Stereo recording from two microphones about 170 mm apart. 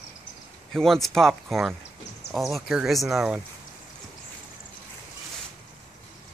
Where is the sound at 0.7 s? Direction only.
Centre (ahead or behind).